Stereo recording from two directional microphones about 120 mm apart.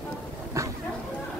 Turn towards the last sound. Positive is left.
turn(degrees=-25)  # may be behind; listen again after turning